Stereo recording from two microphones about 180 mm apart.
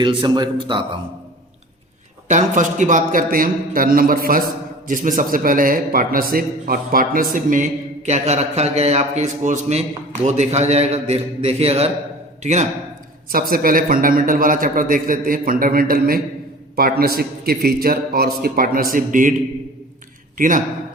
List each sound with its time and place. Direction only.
0.0 s speech: 25° right (ahead or behind)
2.2 s a man's voice: 45° right (ahead or behind)
13.5 s a man's voice: 55° right (ahead or behind)